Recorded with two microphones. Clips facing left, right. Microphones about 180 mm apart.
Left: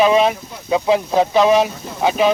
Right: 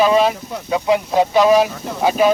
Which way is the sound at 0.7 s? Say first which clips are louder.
Left 1 dB; 25° left (ahead or behind).